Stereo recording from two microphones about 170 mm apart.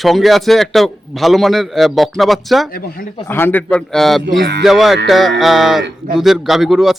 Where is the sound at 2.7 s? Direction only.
60° left (ahead or behind).